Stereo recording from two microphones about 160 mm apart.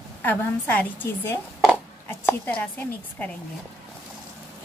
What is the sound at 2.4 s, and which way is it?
Speech, 10° left (ahead or behind).